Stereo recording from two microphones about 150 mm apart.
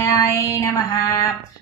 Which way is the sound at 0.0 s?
20° left (ahead or behind).